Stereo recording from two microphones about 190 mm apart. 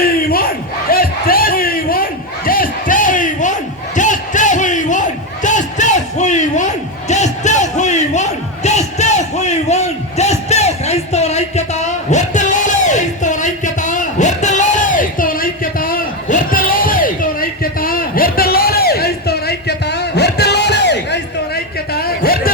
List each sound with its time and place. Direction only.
0.0 s crowd: 50° left (ahead or behind)